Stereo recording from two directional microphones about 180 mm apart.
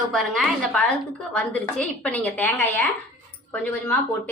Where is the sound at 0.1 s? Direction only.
Centre (ahead or behind).